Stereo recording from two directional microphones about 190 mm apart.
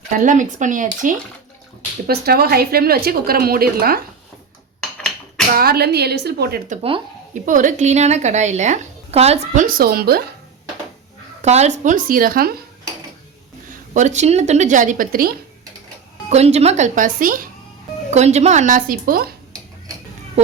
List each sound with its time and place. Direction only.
0.1 s speech: 40° right (ahead or behind)
2.0 s speech: 55° right (ahead or behind)
5.5 s a woman's voice: 55° right (ahead or behind)
7.4 s a woman's voice: 40° right (ahead or behind)
11.4 s speech: 35° right (ahead or behind)
13.9 s a woman's voice: 40° right (ahead or behind)
16.3 s a woman's voice: 35° right (ahead or behind); by 19.3 s 50° right (ahead or behind)